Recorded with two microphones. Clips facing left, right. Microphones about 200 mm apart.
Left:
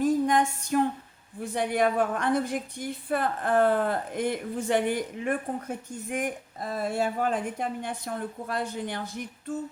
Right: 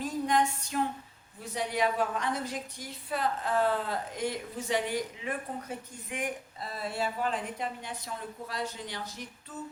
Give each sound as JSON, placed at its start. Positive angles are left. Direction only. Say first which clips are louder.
{"t": 0.0, "sound": "music", "louder": "left 5 dB", "side_deg": 50}
{"t": 1.4, "sound": "a woman's voice", "louder": "left 5 dB", "side_deg": 55}